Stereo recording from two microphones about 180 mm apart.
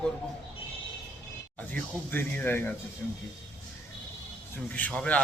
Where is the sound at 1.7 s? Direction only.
10° left (ahead or behind).